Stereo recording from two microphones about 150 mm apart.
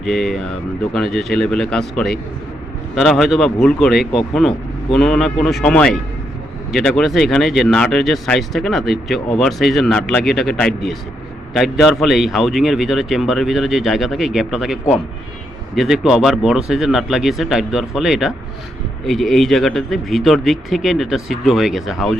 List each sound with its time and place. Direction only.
0.0 s speech: centre (ahead or behind)